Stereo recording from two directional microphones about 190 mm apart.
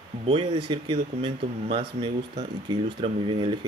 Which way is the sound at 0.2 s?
30° right (ahead or behind).